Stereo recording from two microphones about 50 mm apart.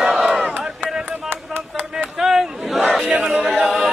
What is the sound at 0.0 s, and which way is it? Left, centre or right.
Battle cry, centre.